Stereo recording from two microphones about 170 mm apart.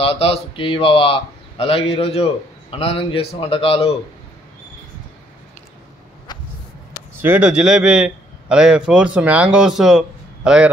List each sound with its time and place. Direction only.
0.0 s a man's voice: 35° left (ahead or behind)
6.3 s a sound: 25° left (ahead or behind)
7.2 s a man's voice: 10° right (ahead or behind)